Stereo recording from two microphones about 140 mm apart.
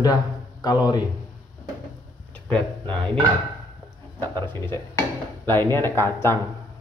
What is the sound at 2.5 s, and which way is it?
Speech, 35° right (ahead or behind).